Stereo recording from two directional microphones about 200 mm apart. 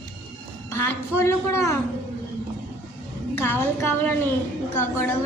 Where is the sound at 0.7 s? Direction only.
15° left (ahead or behind).